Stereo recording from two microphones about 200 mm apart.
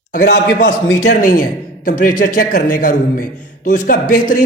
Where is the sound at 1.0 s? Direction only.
40° left (ahead or behind).